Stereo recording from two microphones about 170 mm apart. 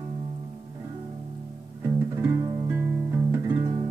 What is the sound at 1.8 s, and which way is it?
Music, 15° right (ahead or behind).